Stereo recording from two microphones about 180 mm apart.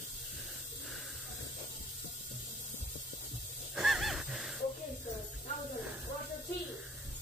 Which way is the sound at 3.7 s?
Centre (ahead or behind).